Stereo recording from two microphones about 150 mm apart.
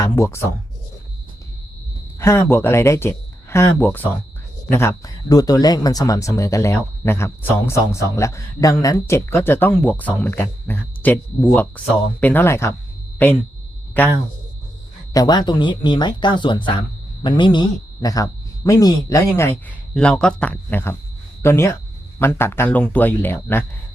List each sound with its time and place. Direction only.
0.0 s speech: 20° left (ahead or behind)
2.1 s speech: 15° left (ahead or behind)
14.0 s speech: 10° left (ahead or behind)
15.1 s speech: 25° left (ahead or behind)
19.9 s speech: 5° left (ahead or behind)